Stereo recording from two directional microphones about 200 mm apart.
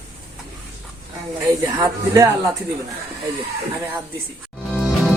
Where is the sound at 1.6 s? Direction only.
15° right (ahead or behind).